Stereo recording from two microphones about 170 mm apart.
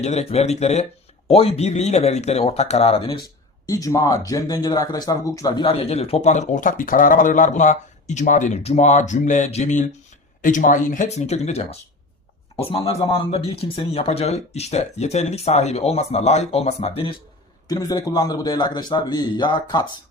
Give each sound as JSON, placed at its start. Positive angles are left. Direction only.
{"t": 0.0, "sound": "speech", "side_deg": 40}
{"t": 3.7, "sound": "speech", "side_deg": 20}
{"t": 17.7, "sound": "a man's voice", "side_deg": 20}